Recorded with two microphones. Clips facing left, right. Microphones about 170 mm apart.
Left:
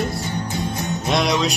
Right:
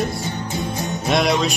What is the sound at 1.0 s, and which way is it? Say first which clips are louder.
Music: right 2 dB; 5° right (ahead or behind).